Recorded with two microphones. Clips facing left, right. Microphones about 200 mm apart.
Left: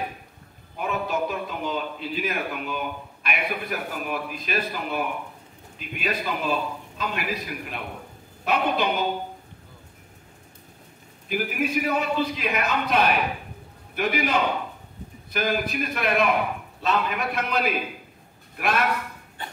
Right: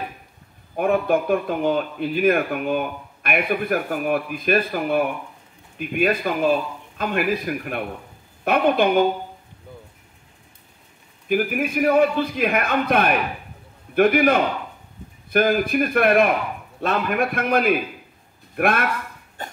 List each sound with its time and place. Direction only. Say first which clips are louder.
0.7 s a man's voice: right 8 dB; 55° right (ahead or behind)
11.2 s a man's voice: right 5 dB; 50° right (ahead or behind)
19.4 s cough: right 3 dB; 45° right (ahead or behind)